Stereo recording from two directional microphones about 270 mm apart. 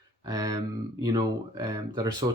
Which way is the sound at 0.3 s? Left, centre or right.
Centre.